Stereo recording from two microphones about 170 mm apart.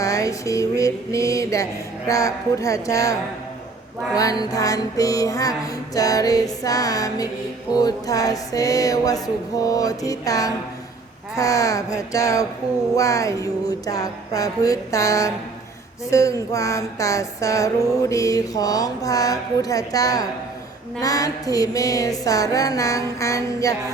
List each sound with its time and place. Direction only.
0.0 s music: 20° left (ahead or behind)
4.2 s music: 20° left (ahead or behind)